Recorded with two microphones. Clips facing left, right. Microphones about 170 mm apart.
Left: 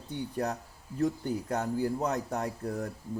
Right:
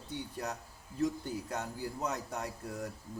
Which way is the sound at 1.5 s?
50° left (ahead or behind).